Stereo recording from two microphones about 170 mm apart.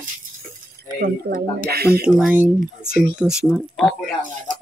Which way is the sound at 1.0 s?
60° right (ahead or behind).